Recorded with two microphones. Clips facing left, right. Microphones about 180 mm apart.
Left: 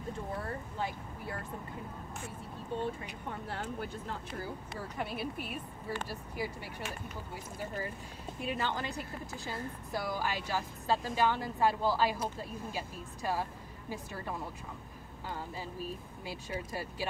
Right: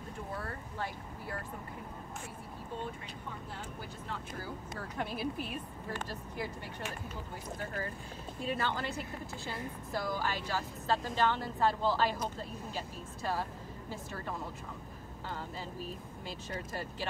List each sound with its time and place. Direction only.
3.4 s speech: 70° left (ahead or behind)
4.7 s a woman's voice: 5° left (ahead or behind)
8.4 s a woman's voice: 15° left (ahead or behind)